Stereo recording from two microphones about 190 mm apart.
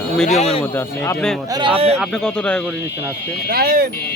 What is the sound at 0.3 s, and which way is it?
Speech, 35° left (ahead or behind).